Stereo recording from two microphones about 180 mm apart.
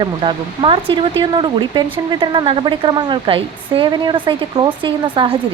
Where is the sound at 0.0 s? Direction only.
25° right (ahead or behind).